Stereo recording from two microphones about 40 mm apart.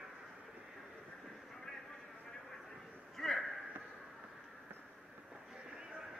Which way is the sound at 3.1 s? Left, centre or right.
Centre.